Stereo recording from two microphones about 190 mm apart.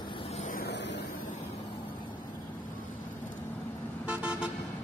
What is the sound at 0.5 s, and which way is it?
Vehicle, 55° left (ahead or behind).